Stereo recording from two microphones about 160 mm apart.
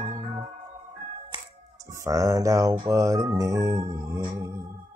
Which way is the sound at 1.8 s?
20° right (ahead or behind).